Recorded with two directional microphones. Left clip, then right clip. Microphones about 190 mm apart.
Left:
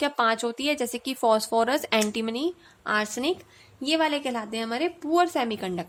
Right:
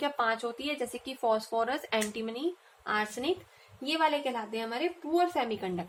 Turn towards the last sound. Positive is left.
turn(degrees=55)  # may be behind; listen again after turning